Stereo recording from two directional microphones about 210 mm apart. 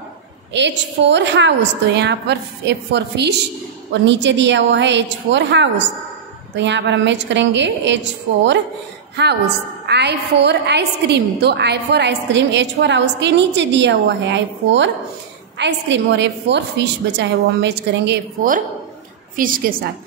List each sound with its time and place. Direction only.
0.5 s a woman's voice: 55° right (ahead or behind)